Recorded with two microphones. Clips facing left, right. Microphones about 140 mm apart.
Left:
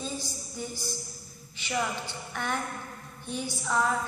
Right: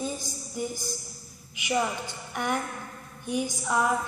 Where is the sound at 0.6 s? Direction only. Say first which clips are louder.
Right 4 dB; 15° right (ahead or behind).